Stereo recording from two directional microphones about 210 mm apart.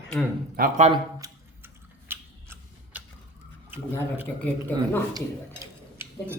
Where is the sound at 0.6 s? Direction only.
30° right (ahead or behind).